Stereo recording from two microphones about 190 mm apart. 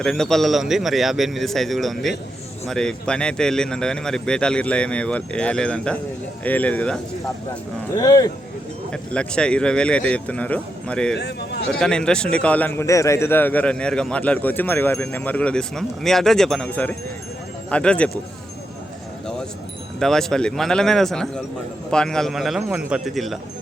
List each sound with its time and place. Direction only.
0.0 s a man's voice: 5° left (ahead or behind)
7.9 s speech: 20° left (ahead or behind)
8.9 s a man's voice: 5° left (ahead or behind)
11.2 s a man's voice: 60° left (ahead or behind)
11.7 s a man's voice: 5° left (ahead or behind)
20.0 s a man's voice: 5° left (ahead or behind)